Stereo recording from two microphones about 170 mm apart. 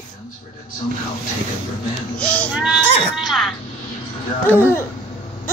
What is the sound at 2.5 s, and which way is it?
Baby cry, 5° right (ahead or behind).